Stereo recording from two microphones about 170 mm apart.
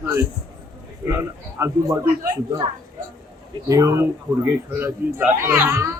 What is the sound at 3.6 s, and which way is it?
A man's voice, 20° right (ahead or behind).